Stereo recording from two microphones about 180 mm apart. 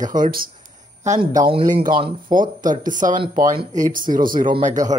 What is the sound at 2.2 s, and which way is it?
Speech, 45° right (ahead or behind).